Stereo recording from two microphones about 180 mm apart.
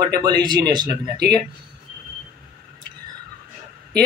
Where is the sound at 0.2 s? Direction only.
25° right (ahead or behind).